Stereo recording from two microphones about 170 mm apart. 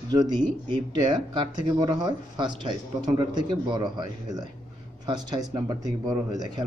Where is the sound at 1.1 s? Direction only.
25° right (ahead or behind).